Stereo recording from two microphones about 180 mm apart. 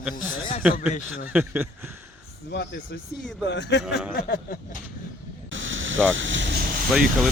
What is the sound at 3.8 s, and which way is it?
Speech, 5° right (ahead or behind).